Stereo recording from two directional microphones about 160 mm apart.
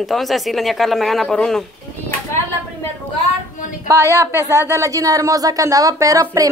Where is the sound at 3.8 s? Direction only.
20° right (ahead or behind).